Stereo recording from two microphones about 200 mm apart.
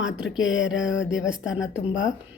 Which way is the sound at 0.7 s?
75° left (ahead or behind).